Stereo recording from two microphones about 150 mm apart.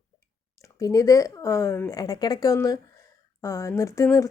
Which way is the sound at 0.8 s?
25° left (ahead or behind).